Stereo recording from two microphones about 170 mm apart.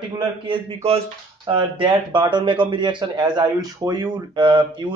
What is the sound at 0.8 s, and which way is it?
Speech, 30° right (ahead or behind).